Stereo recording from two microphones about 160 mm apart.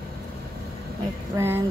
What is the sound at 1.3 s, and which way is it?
Speech, 15° right (ahead or behind).